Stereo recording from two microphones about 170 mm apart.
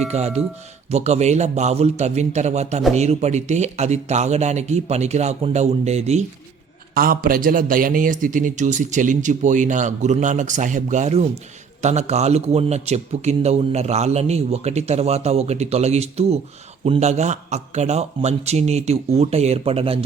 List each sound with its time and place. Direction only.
0.1 s a man's voice: 40° right (ahead or behind)
6.9 s a man's voice: 55° right (ahead or behind); by 20.1 s 35° right (ahead or behind)